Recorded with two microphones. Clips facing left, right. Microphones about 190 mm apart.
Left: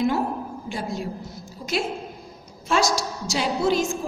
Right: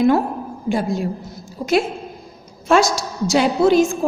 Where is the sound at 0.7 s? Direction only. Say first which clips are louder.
Right 10 dB; 60° right (ahead or behind).